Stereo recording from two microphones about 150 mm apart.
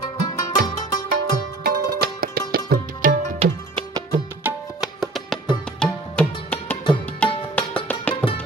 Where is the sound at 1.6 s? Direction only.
85° right.